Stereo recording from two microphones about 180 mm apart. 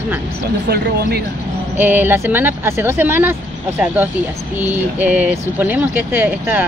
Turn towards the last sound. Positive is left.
turn(degrees=-10)  # may be behind; listen again after turning